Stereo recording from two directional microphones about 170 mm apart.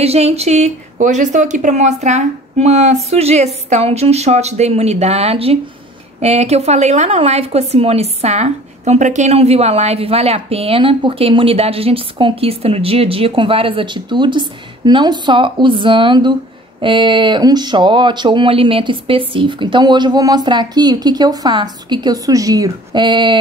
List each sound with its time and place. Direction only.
0.0 s speech: 40° right (ahead or behind)